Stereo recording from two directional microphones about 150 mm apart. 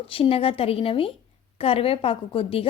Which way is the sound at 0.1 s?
40° left (ahead or behind).